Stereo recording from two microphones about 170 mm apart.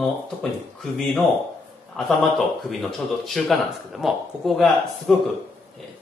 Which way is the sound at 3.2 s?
Centre (ahead or behind).